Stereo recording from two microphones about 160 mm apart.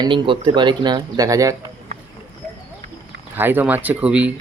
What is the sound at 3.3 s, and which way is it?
Speech, 10° right (ahead or behind).